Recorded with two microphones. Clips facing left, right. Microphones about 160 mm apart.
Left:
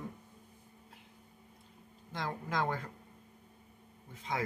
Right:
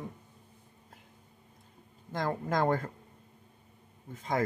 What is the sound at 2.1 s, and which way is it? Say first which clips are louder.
Speech: right 6 dB; 45° right (ahead or behind).